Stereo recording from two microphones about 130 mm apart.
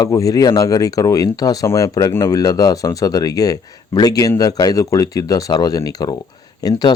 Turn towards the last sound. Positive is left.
turn(degrees=30)  # may be behind; listen again after turning